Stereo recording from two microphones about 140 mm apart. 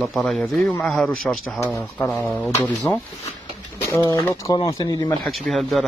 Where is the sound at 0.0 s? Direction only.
Centre (ahead or behind); by 5.1 s 25° left (ahead or behind).